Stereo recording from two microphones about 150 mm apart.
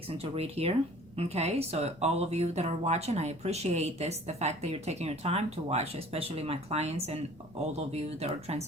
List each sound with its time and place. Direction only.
0.1 s speech: 40° right (ahead or behind)